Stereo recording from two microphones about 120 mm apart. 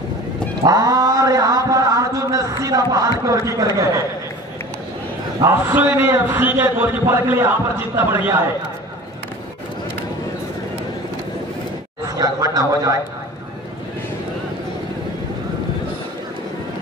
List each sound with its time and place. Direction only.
0.7 s a sound: 30° right (ahead or behind)
3.3 s a man's voice: 30° right (ahead or behind)
5.4 s a man's voice: 15° right (ahead or behind)
12.2 s a man's voice: 30° right (ahead or behind)